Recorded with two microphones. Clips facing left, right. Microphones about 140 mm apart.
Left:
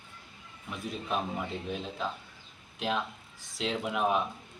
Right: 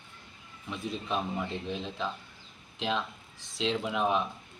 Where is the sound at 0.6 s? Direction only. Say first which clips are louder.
Right 1 dB; 5° left (ahead or behind).